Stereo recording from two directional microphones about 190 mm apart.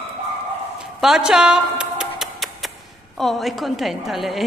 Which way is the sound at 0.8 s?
5° right (ahead or behind).